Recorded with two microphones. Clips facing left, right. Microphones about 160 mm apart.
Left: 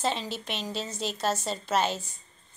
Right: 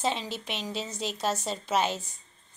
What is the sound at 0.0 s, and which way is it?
A woman's voice, centre (ahead or behind).